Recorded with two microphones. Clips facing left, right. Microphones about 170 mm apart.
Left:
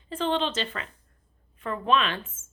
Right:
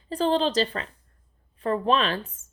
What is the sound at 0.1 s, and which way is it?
A woman's voice, 35° right (ahead or behind).